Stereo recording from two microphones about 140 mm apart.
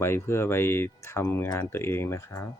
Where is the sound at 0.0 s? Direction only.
20° left (ahead or behind).